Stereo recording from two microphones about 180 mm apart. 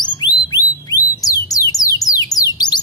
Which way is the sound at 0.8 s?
20° left (ahead or behind).